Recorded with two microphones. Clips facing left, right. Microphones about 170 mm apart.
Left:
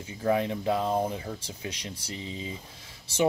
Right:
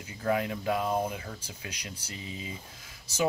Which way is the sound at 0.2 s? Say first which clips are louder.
Left 3 dB; 25° left (ahead or behind).